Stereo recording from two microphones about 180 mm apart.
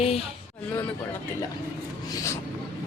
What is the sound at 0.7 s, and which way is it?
Speech, 10° left (ahead or behind).